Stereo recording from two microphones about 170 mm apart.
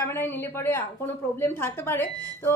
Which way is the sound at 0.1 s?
15° left (ahead or behind).